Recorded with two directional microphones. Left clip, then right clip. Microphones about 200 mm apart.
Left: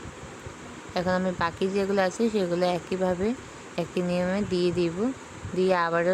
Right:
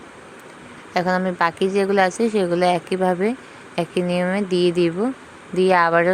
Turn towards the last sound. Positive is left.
turn(degrees=-10)  # may be behind; listen again after turning